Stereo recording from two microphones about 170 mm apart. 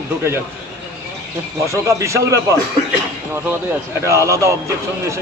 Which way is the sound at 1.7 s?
15° right (ahead or behind).